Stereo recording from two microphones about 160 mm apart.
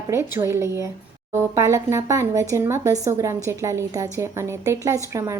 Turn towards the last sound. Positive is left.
turn(degrees=-20)  # may be behind; listen again after turning